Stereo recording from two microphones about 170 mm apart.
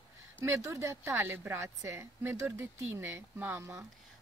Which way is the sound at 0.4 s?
15° right (ahead or behind).